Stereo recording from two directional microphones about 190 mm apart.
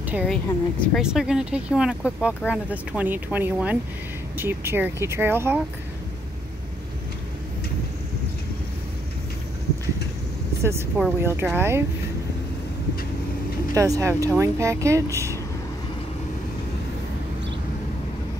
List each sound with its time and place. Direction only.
0.0 s a sound: 10° right (ahead or behind)
0.3 s speech: centre (ahead or behind)
11.0 s speech: 5° right (ahead or behind)
13.7 s speech: 15° right (ahead or behind)